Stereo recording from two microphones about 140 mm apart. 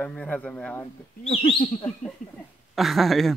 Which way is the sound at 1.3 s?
45° left (ahead or behind).